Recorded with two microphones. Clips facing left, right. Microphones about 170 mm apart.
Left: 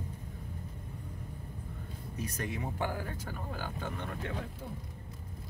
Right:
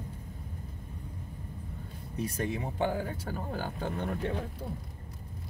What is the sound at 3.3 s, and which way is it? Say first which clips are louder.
Speech: right 4 dB; 40° right (ahead or behind).